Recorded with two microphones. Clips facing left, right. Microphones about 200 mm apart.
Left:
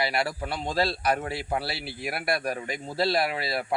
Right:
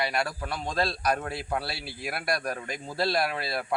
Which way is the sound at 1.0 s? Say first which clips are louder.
Left 1 dB; 5° left (ahead or behind).